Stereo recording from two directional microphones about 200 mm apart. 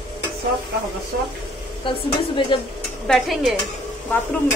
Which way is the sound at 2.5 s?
25° left (ahead or behind).